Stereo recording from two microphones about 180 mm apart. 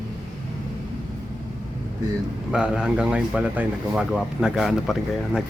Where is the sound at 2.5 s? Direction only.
5° right (ahead or behind).